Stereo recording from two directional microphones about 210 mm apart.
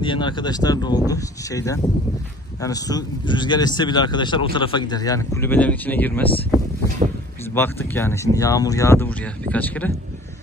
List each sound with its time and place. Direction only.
0.0 s a man's voice: 20° left (ahead or behind)
7.5 s speech: 10° left (ahead or behind)